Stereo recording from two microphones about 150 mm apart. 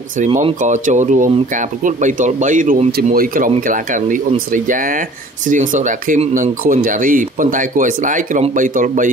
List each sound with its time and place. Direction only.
0.2 s speech: 45° right (ahead or behind)
0.6 s speech: 55° right (ahead or behind)